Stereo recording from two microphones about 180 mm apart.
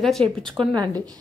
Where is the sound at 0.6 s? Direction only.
20° right (ahead or behind).